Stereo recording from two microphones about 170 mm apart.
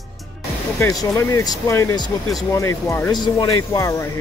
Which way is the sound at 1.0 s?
20° left (ahead or behind).